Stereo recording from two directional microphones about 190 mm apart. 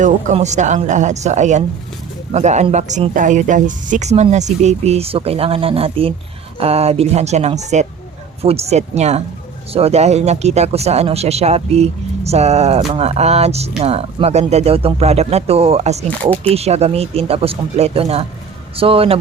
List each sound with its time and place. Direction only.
0.0 s speech: 40° right (ahead or behind)